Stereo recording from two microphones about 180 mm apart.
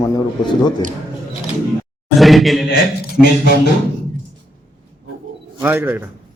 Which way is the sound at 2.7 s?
60° left (ahead or behind).